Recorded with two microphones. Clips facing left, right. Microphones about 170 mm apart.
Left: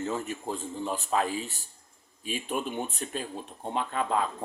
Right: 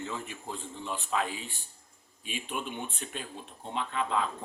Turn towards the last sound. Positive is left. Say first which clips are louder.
# left 3 dB
turn(degrees=45)  # may be behind; listen again after turning